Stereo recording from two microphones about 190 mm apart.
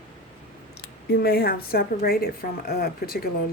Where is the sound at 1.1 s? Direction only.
55° left (ahead or behind).